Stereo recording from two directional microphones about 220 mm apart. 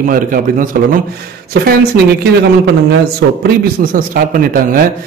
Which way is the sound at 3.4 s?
40° right (ahead or behind).